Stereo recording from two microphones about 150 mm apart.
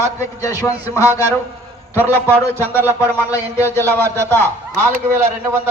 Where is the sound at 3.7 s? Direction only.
15° left (ahead or behind).